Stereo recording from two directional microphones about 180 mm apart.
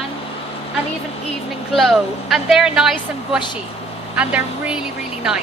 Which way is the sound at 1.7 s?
Centre (ahead or behind).